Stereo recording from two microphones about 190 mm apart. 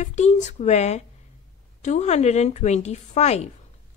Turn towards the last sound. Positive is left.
turn(degrees=35)  # may be behind; listen again after turning